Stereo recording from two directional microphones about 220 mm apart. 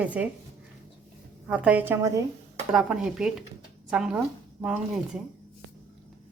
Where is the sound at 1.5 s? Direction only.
5° right (ahead or behind).